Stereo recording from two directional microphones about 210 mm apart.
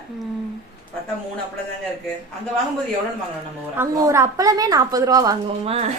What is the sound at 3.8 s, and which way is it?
A woman's voice, 15° right (ahead or behind).